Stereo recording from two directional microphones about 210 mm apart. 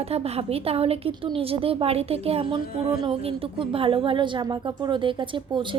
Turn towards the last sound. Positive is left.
turn(degrees=-20)  # may be behind; listen again after turning